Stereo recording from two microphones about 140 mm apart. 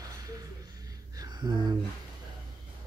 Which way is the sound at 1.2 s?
30° right (ahead or behind).